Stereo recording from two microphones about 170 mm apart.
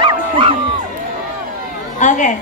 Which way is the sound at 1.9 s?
50° left (ahead or behind).